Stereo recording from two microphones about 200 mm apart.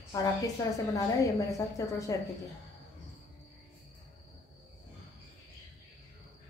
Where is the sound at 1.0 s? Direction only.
15° left (ahead or behind).